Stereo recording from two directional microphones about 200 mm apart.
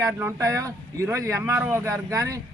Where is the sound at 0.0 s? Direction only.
15° right (ahead or behind).